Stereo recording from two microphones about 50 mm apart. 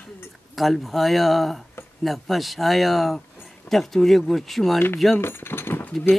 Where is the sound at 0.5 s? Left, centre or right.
Centre.